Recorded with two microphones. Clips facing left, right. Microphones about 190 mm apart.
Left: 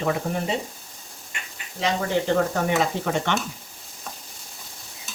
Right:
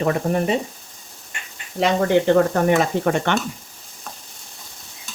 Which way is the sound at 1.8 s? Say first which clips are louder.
Right 7 dB; 55° right (ahead or behind).